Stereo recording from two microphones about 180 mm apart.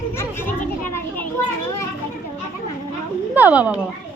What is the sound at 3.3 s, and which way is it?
Speech, 10° right (ahead or behind).